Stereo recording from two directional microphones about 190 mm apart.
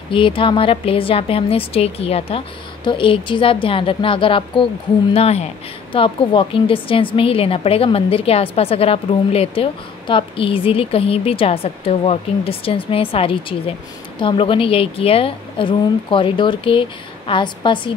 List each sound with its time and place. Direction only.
0.1 s a woman's voice: 25° left (ahead or behind)